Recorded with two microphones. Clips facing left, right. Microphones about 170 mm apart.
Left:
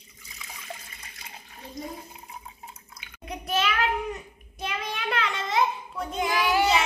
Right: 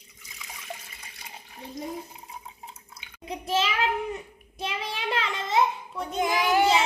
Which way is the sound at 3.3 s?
25° right (ahead or behind).